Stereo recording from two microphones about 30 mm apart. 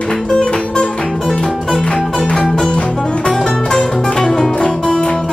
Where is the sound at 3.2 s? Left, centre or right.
Left.